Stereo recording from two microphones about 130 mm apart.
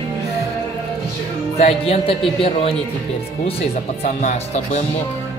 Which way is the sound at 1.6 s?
50° left (ahead or behind).